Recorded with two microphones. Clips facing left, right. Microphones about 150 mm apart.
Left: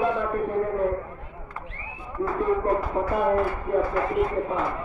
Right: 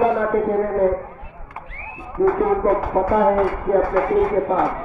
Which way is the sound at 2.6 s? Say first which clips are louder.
Right 6 dB; 55° right (ahead or behind).